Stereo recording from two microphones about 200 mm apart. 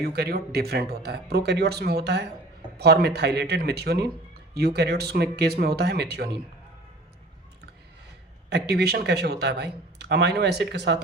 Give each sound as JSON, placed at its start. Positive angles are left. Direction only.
{"t": 0.0, "sound": "speech", "side_deg": -50}
{"t": 8.4, "sound": "speech", "side_deg": -55}